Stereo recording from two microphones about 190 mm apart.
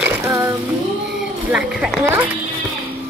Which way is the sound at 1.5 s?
5° right (ahead or behind).